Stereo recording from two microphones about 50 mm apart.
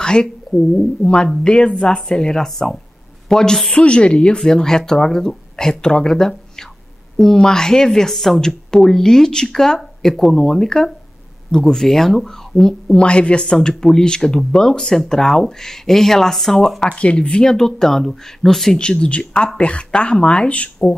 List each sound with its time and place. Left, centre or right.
0.0 s speech: centre
3.7 s speech: left
16.9 s speech: left
17.4 s speech: centre
18.8 s speech: centre